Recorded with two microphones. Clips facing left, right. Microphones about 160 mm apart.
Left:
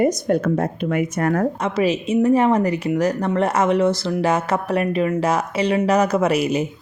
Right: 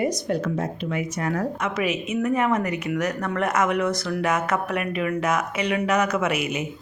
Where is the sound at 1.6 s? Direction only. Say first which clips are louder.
Left 6 dB; 30° left (ahead or behind).